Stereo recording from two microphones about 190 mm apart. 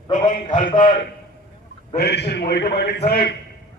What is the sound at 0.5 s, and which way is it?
Speech, 45° left (ahead or behind).